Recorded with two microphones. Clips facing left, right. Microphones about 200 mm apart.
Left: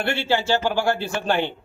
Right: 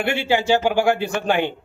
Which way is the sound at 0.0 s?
15° right (ahead or behind).